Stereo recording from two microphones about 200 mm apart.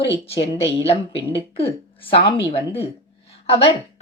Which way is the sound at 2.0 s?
25° left (ahead or behind).